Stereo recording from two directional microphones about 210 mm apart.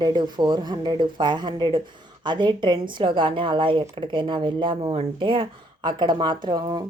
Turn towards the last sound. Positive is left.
turn(degrees=-20)  # may be behind; listen again after turning